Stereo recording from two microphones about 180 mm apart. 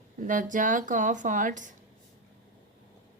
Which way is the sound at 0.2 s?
45° right (ahead or behind).